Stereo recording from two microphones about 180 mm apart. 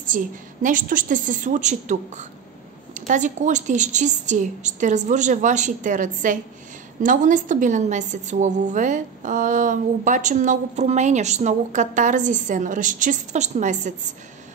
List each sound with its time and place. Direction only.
0.0 s a woman's voice: 45° right (ahead or behind)